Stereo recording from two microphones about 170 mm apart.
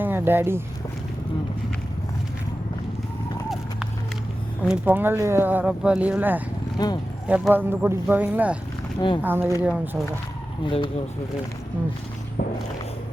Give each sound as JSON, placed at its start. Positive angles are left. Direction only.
{"t": 0.0, "sound": "a sound", "side_deg": -10}
{"t": 4.6, "sound": "speech", "side_deg": -10}
{"t": 6.7, "sound": "speech", "side_deg": 25}
{"t": 7.3, "sound": "speech", "side_deg": -10}
{"t": 9.0, "sound": "speech", "side_deg": 30}
{"t": 9.2, "sound": "speech", "side_deg": -10}
{"t": 10.6, "sound": "speech", "side_deg": 30}
{"t": 12.4, "sound": "walk", "side_deg": 60}